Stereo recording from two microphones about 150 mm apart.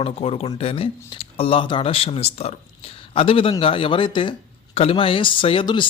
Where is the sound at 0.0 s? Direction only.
40° left (ahead or behind).